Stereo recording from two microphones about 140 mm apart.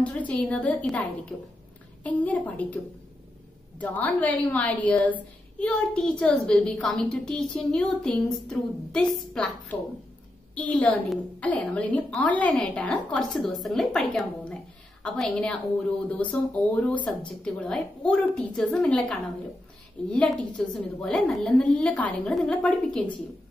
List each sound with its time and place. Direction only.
0.0 s a woman's voice: 10° left (ahead or behind)
2.0 s a woman's voice: 10° left (ahead or behind)
17.4 s a woman's voice: 5° left (ahead or behind)